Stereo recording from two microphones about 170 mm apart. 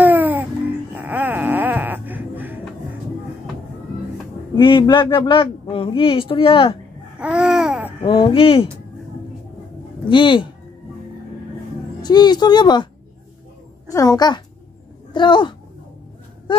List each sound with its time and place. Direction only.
0.0 s music: 10° right (ahead or behind)
0.9 s wail: 10° right (ahead or behind)
4.6 s a man's voice: 30° left (ahead or behind)
7.2 s babbling: 5° right (ahead or behind)
8.0 s speech: 30° left (ahead or behind)
10.0 s a man's voice: 30° left (ahead or behind)
12.0 s a man's voice: 25° left (ahead or behind)
13.9 s a man's voice: 25° left (ahead or behind)